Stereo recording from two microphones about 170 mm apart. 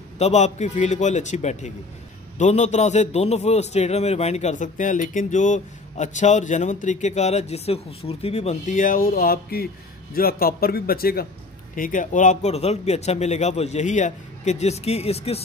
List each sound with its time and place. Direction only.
0.2 s a man's voice: 40° left (ahead or behind); by 11.2 s 65° left (ahead or behind)
11.7 s a man's voice: 50° left (ahead or behind)